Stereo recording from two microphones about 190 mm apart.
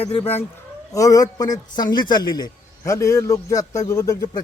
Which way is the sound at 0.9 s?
20° left (ahead or behind).